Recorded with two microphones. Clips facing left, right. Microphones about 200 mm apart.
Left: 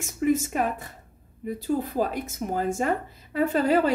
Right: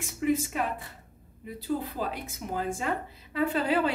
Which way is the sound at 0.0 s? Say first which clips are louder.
Left 4 dB; 45° left (ahead or behind).